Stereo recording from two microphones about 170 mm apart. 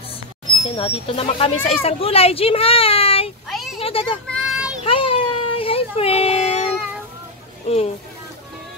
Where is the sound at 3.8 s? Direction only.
35° left (ahead or behind).